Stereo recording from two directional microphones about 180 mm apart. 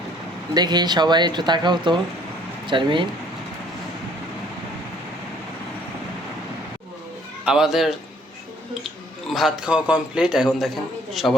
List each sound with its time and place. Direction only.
0.5 s speech: 25° right (ahead or behind)
7.4 s a man's voice: 5° right (ahead or behind)
9.2 s a man's voice: centre (ahead or behind)